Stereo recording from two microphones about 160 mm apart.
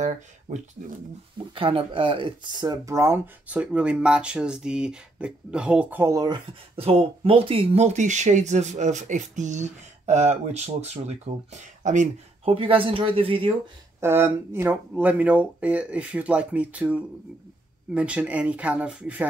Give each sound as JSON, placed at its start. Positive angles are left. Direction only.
{"t": 0.0, "sound": "speech", "side_deg": -45}
{"t": 1.5, "sound": "speech", "side_deg": -35}
{"t": 12.5, "sound": "speech", "side_deg": -35}
{"t": 13.9, "sound": "speech", "side_deg": -15}